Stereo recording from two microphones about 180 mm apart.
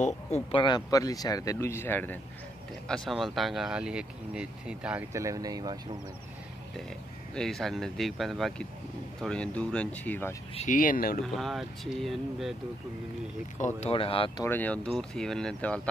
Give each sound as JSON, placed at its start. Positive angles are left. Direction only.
{"t": 0.0, "sound": "speech", "side_deg": 35}
{"t": 2.9, "sound": "speech", "side_deg": 0}
{"t": 5.1, "sound": "speech", "side_deg": -20}
{"t": 7.3, "sound": "speech", "side_deg": 0}
{"t": 10.5, "sound": "speech", "side_deg": 40}
{"t": 11.3, "sound": "speech", "side_deg": 0}
{"t": 13.6, "sound": "speech", "side_deg": 40}
{"t": 14.4, "sound": "speech", "side_deg": 10}